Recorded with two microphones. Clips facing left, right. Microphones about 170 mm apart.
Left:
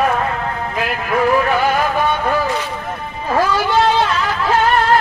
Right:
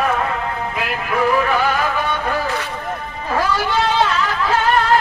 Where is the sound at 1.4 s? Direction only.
40° left (ahead or behind).